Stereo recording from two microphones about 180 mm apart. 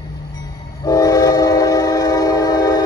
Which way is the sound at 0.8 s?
20° left (ahead or behind).